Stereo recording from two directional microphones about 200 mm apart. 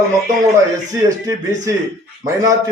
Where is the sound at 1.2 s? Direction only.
20° right (ahead or behind).